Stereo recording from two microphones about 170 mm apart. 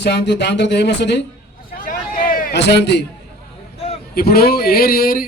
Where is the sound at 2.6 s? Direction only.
80° left.